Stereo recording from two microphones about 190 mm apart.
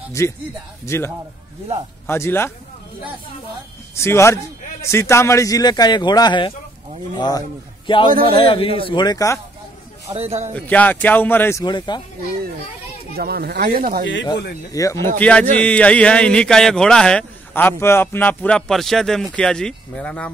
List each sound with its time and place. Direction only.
0.8 s speech: 15° left (ahead or behind)
3.9 s a man's voice: 15° left (ahead or behind)
10.1 s a man's voice: 35° right (ahead or behind)
10.5 s speech: 10° left (ahead or behind)
11.6 s speech: 25° left (ahead or behind)
13.1 s speech: 55° right (ahead or behind)
14.7 s speech: 15° left (ahead or behind)